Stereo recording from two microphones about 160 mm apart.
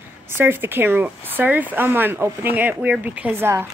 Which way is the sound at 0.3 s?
15° right (ahead or behind).